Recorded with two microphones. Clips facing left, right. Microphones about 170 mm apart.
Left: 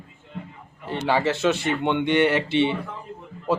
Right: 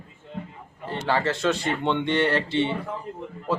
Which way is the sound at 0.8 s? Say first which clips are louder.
Left 2 dB; 20° left (ahead or behind).